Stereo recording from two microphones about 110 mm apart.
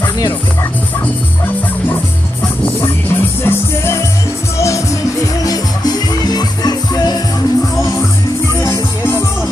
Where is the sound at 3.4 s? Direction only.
25° left (ahead or behind).